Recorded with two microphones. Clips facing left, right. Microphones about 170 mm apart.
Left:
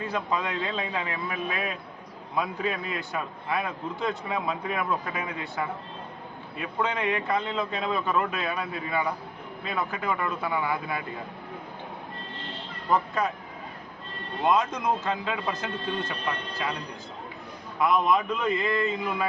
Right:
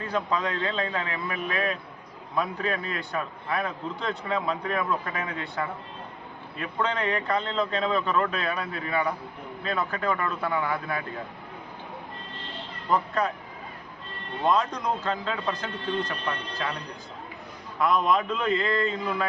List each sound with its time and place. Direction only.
0.1 s a man's voice: 10° left (ahead or behind)
14.4 s a man's voice: 10° left (ahead or behind)
17.7 s a man's voice: 5° left (ahead or behind)